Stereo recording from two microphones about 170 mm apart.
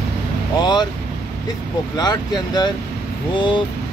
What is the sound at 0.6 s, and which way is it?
Speech, 25° left (ahead or behind).